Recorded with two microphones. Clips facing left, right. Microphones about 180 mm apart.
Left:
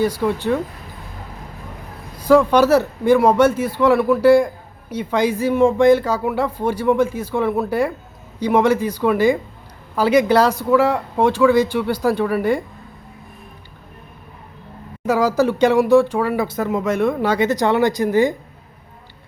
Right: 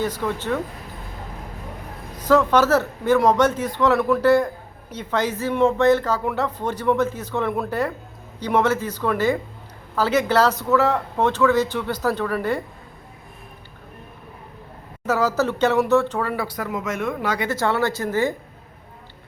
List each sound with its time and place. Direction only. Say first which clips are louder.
0.0 s a man's voice: left 6 dB; 10° left (ahead or behind)
2.1 s a man's voice: left 4 dB; 10° left (ahead or behind)
15.0 s a man's voice: left 4 dB; 15° left (ahead or behind)